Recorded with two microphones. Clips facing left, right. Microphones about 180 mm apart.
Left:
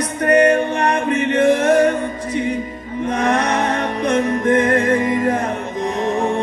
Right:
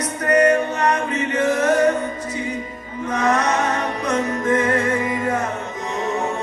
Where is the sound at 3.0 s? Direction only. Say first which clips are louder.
Left 1 dB; 30° left (ahead or behind).